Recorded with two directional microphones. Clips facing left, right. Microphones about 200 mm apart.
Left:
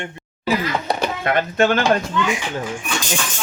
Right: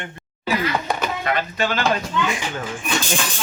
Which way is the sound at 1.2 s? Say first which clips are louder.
Left 7 dB; 55° left (ahead or behind).